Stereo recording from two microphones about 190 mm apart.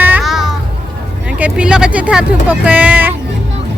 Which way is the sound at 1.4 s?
5° right (ahead or behind).